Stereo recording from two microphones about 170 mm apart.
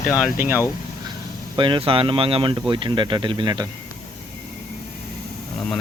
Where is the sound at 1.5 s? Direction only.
30° right (ahead or behind).